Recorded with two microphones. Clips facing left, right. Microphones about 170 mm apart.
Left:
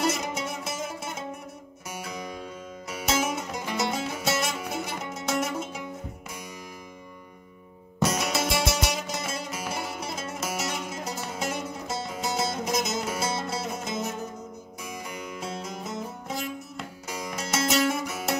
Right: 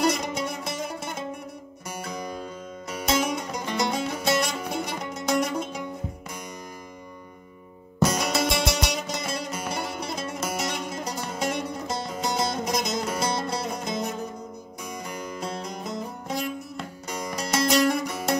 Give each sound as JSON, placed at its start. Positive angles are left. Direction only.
{"t": 0.0, "sound": "music", "side_deg": 5}
{"t": 8.0, "sound": "music", "side_deg": 0}